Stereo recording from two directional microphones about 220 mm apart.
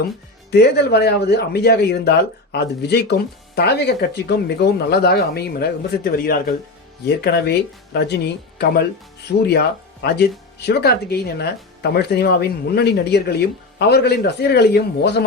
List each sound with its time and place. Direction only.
0.5 s speech: 45° left (ahead or behind)